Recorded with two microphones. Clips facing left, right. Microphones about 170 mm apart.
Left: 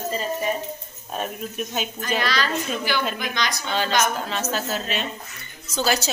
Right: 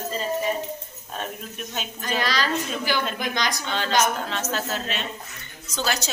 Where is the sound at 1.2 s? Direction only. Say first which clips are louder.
Left 5 dB; 10° left (ahead or behind).